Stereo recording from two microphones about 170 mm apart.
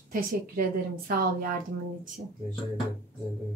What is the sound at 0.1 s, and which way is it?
A woman's voice, 60° right (ahead or behind).